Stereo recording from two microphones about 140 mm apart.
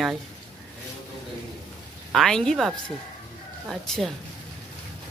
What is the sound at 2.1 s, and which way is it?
Speech, 5° left (ahead or behind).